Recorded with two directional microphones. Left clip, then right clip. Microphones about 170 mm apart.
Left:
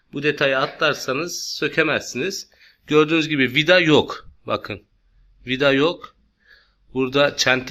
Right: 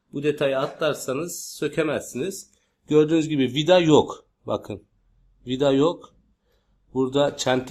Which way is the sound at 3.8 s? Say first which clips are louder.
Left 1 dB; 15° left (ahead or behind).